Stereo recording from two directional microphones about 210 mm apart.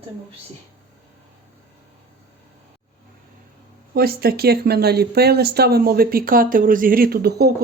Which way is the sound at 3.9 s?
45° right (ahead or behind).